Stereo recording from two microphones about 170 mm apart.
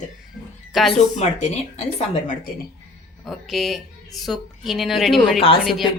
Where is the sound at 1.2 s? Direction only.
40° left (ahead or behind).